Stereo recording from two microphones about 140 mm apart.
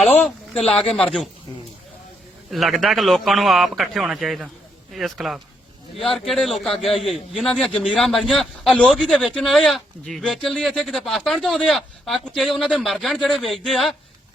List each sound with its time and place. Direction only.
0.2 s a sound: 5° left (ahead or behind)
0.6 s a man's voice: 45° left (ahead or behind)
0.9 s a man's voice: 5° left (ahead or behind)
2.5 s a man's voice: centre (ahead or behind)